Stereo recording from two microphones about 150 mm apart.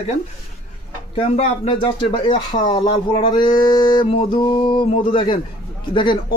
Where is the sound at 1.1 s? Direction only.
35° left (ahead or behind).